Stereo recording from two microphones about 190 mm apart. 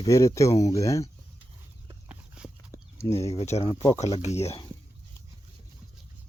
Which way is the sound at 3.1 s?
35° left (ahead or behind).